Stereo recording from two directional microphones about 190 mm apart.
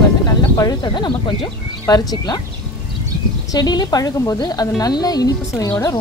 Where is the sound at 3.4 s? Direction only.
20° left (ahead or behind).